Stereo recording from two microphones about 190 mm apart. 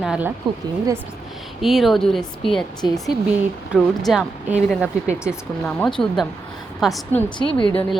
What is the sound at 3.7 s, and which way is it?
A woman's voice, centre (ahead or behind).